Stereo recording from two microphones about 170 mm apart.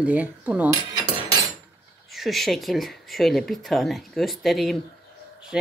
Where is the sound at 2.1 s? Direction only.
Centre (ahead or behind).